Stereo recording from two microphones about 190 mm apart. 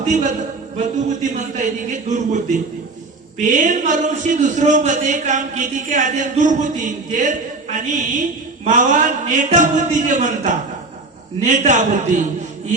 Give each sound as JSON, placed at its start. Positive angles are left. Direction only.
{"t": 0.0, "sound": "a man's voice", "side_deg": -40}